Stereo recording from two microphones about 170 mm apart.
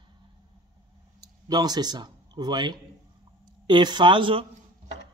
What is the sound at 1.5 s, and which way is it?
Speech, 25° right (ahead or behind).